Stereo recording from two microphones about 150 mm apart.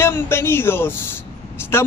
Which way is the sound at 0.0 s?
15° left (ahead or behind).